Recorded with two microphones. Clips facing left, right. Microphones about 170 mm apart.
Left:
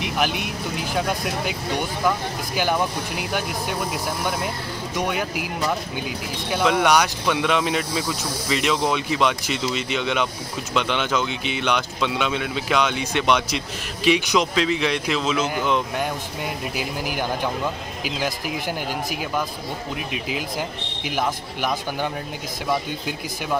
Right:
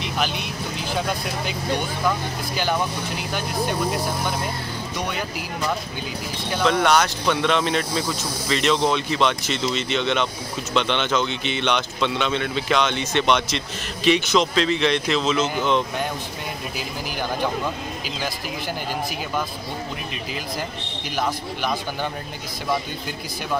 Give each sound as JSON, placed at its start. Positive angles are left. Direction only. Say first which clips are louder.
{"t": 0.3, "sound": "speech", "louder": "left 2 dB", "side_deg": 55}
{"t": 2.0, "sound": "speech", "louder": "left 1 dB", "side_deg": 10}
{"t": 5.0, "sound": "speech", "louder": "left 4 dB", "side_deg": 10}
{"t": 6.5, "sound": "speech", "louder": "even", "side_deg": 10}